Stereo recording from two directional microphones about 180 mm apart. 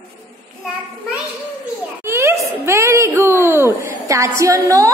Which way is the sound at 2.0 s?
15° right (ahead or behind).